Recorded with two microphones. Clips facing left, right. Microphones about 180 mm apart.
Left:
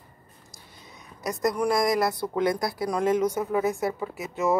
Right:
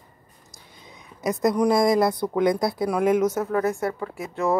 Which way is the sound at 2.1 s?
15° right (ahead or behind).